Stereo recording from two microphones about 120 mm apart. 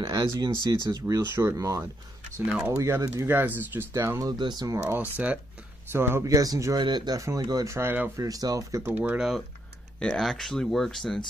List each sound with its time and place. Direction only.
0.0 s speech: 35° right (ahead or behind)
4.4 s speech: 35° right (ahead or behind)
5.1 s speech: 15° right (ahead or behind)
8.2 s speech: 30° right (ahead or behind)
8.9 s speech: 15° right (ahead or behind)
9.9 s speech: 5° left (ahead or behind)